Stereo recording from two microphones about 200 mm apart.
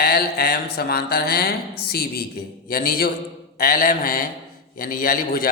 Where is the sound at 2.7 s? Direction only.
45° left (ahead or behind).